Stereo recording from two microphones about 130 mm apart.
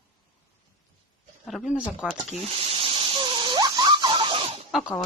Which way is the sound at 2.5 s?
50° right (ahead or behind).